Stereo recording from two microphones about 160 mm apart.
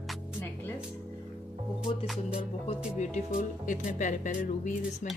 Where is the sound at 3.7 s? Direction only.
50° left (ahead or behind).